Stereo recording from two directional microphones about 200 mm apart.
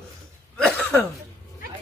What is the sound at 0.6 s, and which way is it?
Throat clearing, 5° left (ahead or behind).